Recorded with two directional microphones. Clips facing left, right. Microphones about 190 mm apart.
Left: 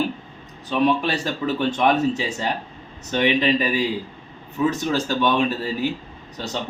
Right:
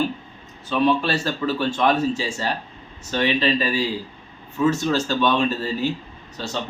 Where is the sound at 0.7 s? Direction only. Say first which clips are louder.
Even; 15° left (ahead or behind).